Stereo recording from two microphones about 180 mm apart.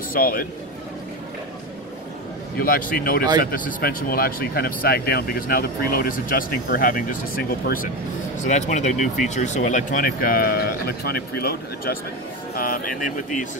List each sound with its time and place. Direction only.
0.1 s speech: 55° left (ahead or behind)
2.6 s speech: 55° left (ahead or behind)
8.5 s speech: 40° left (ahead or behind)